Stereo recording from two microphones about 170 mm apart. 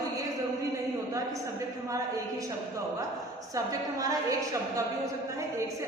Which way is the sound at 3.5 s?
20° right (ahead or behind).